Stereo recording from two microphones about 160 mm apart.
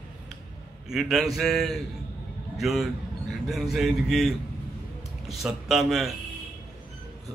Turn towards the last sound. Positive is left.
turn(degrees=0)  # may be behind; listen again after turning